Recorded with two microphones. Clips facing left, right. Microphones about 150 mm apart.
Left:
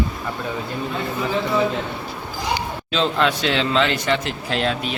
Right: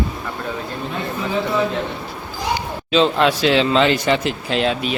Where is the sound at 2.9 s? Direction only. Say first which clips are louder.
Right 5 dB; 10° right (ahead or behind).